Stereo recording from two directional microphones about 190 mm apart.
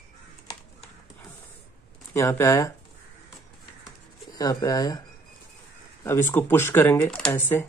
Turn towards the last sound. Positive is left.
turn(degrees=10)  # may be behind; listen again after turning